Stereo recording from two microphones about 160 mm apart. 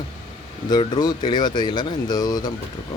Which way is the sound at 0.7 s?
25° left (ahead or behind).